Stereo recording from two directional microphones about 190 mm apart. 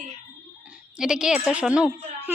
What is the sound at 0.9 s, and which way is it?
Speech, 5° right (ahead or behind).